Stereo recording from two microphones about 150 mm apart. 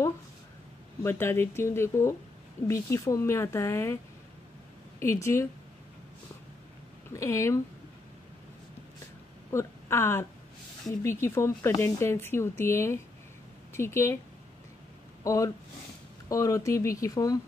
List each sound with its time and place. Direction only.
1.0 s a woman's voice: 15° left (ahead or behind)
5.0 s speech: 20° left (ahead or behind)
7.1 s speech: 20° left (ahead or behind)
9.5 s a woman's voice: 20° left (ahead or behind)
15.2 s speech: 20° left (ahead or behind)